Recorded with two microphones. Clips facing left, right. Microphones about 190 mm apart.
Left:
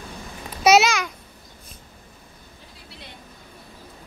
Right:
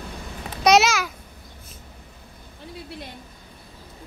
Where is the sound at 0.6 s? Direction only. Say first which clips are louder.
Left 1 dB; centre (ahead or behind).